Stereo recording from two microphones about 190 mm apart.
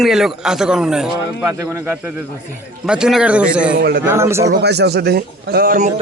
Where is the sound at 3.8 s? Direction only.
60° right (ahead or behind).